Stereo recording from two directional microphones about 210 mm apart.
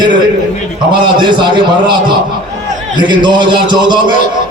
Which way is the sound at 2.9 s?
20° right (ahead or behind).